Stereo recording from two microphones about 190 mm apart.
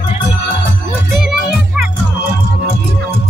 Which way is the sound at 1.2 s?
5° right (ahead or behind).